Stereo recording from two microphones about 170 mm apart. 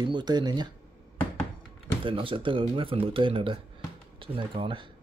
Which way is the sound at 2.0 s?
30° right (ahead or behind).